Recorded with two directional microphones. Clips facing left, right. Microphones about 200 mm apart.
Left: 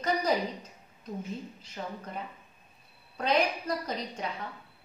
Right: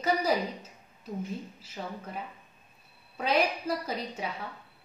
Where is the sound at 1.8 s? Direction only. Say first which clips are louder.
Even; 5° right (ahead or behind).